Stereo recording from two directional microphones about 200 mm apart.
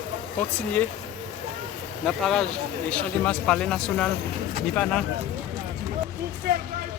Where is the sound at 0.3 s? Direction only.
5° left (ahead or behind).